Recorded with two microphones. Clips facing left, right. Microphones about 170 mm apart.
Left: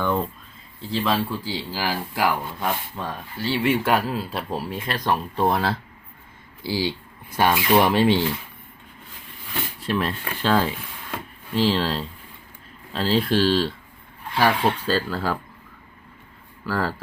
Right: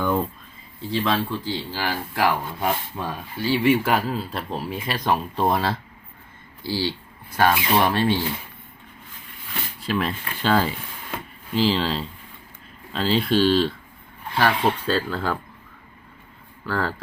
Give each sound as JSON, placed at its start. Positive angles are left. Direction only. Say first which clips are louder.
{"t": 0.0, "sound": "speech", "louder": "right 1 dB", "side_deg": -5}
{"t": 2.6, "sound": "speech", "louder": "right 2 dB", "side_deg": -10}
{"t": 6.6, "sound": "speech", "louder": "left 1 dB", "side_deg": 15}
{"t": 9.8, "sound": "speech", "louder": "even", "side_deg": 0}
{"t": 16.6, "sound": "speech", "louder": "even", "side_deg": 5}